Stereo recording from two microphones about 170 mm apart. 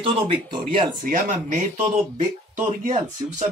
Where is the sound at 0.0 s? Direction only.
30° right (ahead or behind).